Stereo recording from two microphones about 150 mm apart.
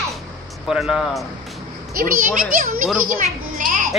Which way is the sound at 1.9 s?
70° right (ahead or behind).